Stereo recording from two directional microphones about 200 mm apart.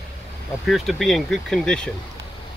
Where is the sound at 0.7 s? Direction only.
Centre (ahead or behind).